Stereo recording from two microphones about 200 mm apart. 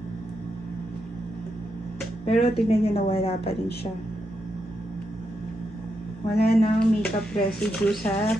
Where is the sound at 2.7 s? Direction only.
30° left (ahead or behind).